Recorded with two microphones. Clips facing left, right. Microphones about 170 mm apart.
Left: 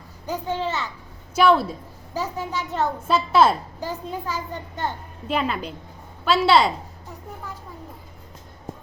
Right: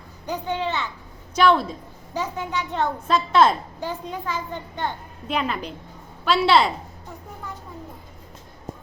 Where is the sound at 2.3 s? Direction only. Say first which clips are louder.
Right 1 dB; 35° left (ahead or behind).